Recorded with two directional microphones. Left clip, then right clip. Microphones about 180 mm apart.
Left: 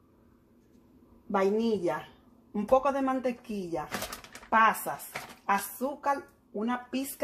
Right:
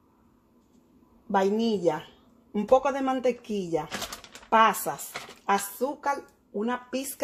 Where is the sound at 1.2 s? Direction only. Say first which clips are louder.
Right 2 dB; 50° right (ahead or behind).